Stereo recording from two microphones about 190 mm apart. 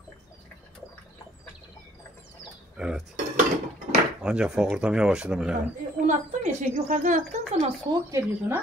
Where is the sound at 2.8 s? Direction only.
5° right (ahead or behind).